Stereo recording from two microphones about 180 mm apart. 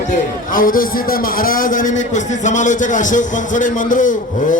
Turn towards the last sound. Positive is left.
turn(degrees=45)  # may be behind; listen again after turning